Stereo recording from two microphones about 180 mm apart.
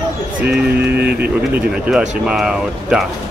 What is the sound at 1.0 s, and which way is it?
Speech, 60° right (ahead or behind).